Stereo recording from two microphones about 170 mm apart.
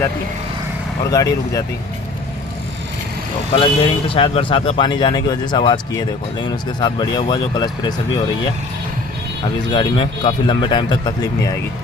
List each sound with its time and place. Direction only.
1.1 s speech: 20° left (ahead or behind)
3.5 s speech: 30° left (ahead or behind)
9.7 s speech: 25° left (ahead or behind)